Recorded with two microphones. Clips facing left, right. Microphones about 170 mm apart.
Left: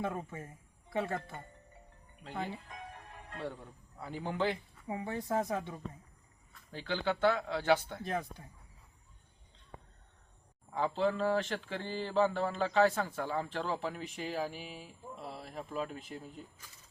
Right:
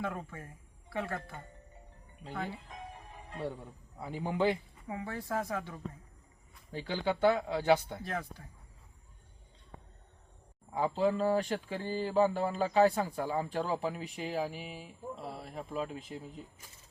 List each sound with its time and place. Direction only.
0.0 s speech: 20° left (ahead or behind)
2.3 s speech: 20° left (ahead or behind)
2.6 s speech: 5° right (ahead or behind)
4.9 s speech: 20° left (ahead or behind)
6.5 s a man's voice: 15° right (ahead or behind)
8.0 s speech: 20° left (ahead or behind)
10.7 s a man's voice: 10° right (ahead or behind)